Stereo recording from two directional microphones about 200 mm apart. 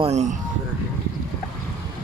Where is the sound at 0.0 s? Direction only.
35° right (ahead or behind).